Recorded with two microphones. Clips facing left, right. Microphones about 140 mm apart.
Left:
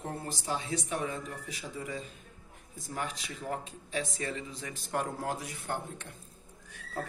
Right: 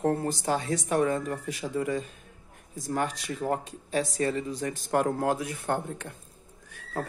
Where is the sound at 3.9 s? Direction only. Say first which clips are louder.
Right 8 dB; 40° right (ahead or behind).